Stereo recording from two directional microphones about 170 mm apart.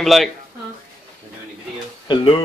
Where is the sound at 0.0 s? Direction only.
Centre (ahead or behind).